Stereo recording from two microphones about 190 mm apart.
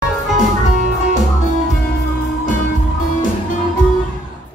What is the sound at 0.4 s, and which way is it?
Music, 40° left (ahead or behind).